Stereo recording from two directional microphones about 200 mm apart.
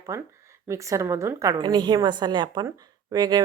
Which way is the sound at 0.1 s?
15° right (ahead or behind).